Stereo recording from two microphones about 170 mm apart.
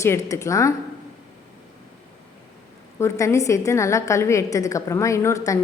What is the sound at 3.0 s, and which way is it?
A woman's voice, 15° left (ahead or behind).